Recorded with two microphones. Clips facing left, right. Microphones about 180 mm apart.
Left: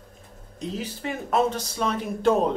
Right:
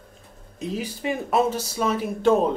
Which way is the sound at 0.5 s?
10° right (ahead or behind).